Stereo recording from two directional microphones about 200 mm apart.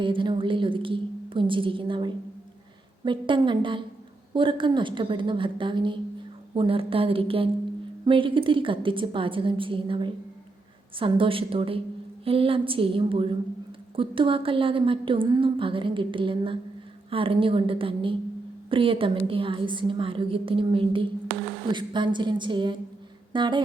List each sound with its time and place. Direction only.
0.0 s a woman's voice: 25° right (ahead or behind)